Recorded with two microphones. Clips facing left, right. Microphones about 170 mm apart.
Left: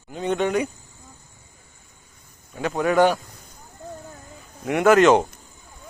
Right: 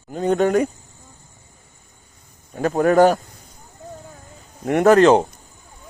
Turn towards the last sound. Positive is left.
turn(degrees=-30)  # may be behind; listen again after turning